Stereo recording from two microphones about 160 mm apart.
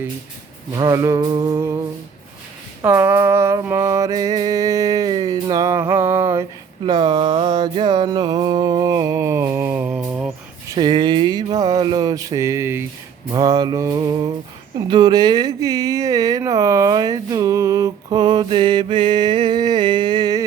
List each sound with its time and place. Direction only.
0.7 s music: 25° right (ahead or behind)
2.8 s a sound: 15° right (ahead or behind)
6.8 s mantra: 30° right (ahead or behind); by 10.8 s 10° right (ahead or behind)
10.8 s a sound: 30° right (ahead or behind)
13.3 s music: 25° right (ahead or behind)
14.8 s speech: 30° right (ahead or behind)